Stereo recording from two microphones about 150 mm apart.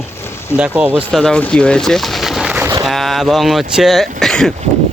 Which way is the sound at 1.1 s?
5° left (ahead or behind).